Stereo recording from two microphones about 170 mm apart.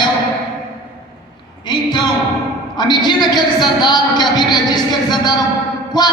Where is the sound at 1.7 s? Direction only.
25° left (ahead or behind).